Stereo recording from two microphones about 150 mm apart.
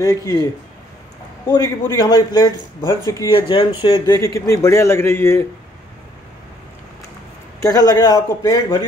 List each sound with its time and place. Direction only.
0.0 s a man's voice: 20° left (ahead or behind)
1.5 s a man's voice: 25° left (ahead or behind)
7.6 s a man's voice: 25° left (ahead or behind)